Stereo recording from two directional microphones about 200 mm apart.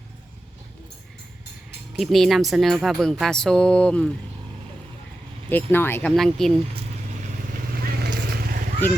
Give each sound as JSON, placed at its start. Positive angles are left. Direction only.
{"t": 2.0, "sound": "speech", "side_deg": 0}
{"t": 5.5, "sound": "speech", "side_deg": 10}
{"t": 7.7, "sound": "vehicle", "side_deg": -50}